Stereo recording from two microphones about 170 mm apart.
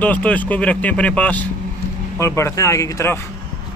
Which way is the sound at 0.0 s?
10° left (ahead or behind).